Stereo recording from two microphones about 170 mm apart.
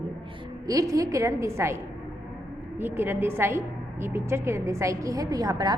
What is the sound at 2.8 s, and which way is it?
A woman's voice, 15° right (ahead or behind).